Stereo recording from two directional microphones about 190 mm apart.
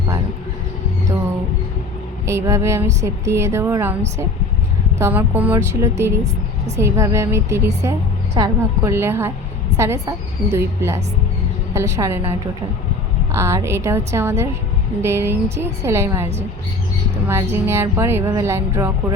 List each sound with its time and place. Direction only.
2.2 s a woman's voice: 15° right (ahead or behind)
4.9 s a woman's voice: 10° right (ahead or behind)
13.3 s a woman's voice: 15° right (ahead or behind)
17.2 s a woman's voice: 15° right (ahead or behind)